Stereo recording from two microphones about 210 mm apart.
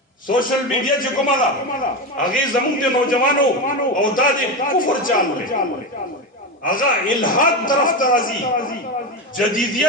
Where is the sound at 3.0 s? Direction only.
40° left (ahead or behind).